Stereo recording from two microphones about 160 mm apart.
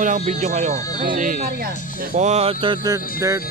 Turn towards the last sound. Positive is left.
turn(degrees=-20)  # may be behind; listen again after turning